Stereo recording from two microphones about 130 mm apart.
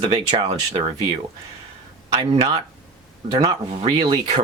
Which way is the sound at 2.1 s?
35° right (ahead or behind).